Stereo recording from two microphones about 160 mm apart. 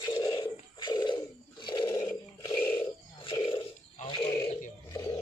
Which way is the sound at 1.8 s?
15° left (ahead or behind).